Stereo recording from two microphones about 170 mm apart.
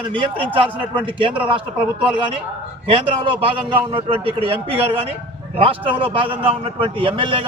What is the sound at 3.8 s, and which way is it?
Speech, 30° right (ahead or behind).